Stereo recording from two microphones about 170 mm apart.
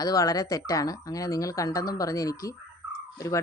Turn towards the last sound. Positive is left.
turn(degrees=20)  # may be behind; listen again after turning